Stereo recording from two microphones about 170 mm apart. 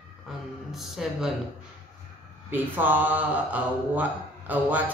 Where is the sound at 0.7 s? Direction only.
Centre (ahead or behind).